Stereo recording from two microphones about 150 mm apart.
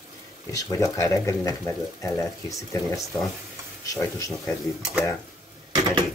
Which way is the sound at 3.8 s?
20° left (ahead or behind).